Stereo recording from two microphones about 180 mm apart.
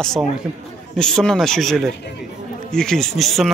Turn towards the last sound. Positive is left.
turn(degrees=0)  # may be behind; listen again after turning